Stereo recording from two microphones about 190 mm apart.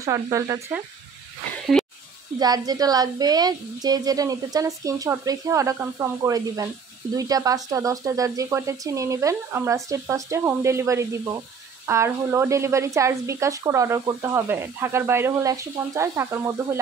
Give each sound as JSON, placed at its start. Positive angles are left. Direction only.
{"t": 0.0, "sound": "a woman's voice", "side_deg": -15}
{"t": 1.7, "sound": "snake", "side_deg": 5}
{"t": 2.3, "sound": "a woman's voice", "side_deg": -20}